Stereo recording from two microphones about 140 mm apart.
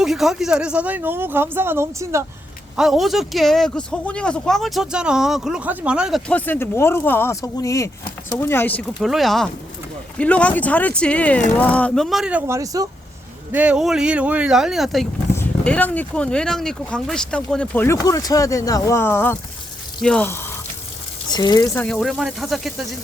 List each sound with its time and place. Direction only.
0.0 s speech: 5° right (ahead or behind); by 2.2 s 20° right (ahead or behind)
2.7 s speech: 5° right (ahead or behind)
6.3 s speech: 10° left (ahead or behind)
9.0 s speech: centre (ahead or behind)
12.5 s speech: 25° right (ahead or behind)
13.5 s speech: 10° right (ahead or behind)
15.4 s speech: 10° left (ahead or behind)
17.8 s speech: 25° left (ahead or behind)
20.0 s speech: 5° left (ahead or behind)
21.2 s speech: 30° left (ahead or behind)
21.8 s speech: 5° left (ahead or behind)